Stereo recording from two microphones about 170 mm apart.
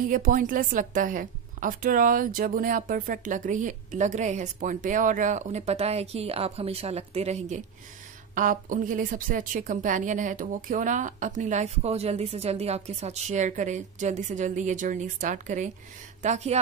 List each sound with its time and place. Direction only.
0.1 s a woman's voice: 50° right (ahead or behind)